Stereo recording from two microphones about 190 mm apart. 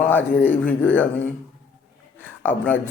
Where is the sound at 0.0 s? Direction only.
10° left (ahead or behind).